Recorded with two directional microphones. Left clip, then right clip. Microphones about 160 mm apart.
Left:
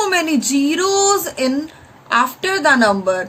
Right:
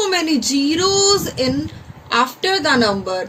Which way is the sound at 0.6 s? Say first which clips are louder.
Even; 55° left (ahead or behind).